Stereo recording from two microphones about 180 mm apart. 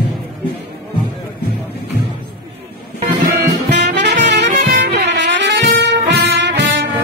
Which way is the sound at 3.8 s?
70° right (ahead or behind).